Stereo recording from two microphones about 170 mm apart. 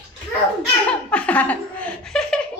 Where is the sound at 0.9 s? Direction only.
5° left (ahead or behind).